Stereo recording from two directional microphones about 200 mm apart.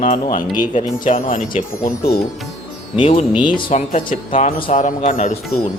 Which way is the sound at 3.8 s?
40° left (ahead or behind).